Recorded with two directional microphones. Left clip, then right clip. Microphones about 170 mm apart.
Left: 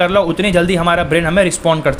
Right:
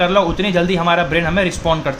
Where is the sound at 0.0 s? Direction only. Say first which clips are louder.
Left 2 dB; 40° left (ahead or behind).